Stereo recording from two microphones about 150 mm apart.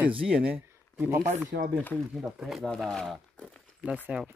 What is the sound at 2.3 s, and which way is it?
Speech, centre (ahead or behind).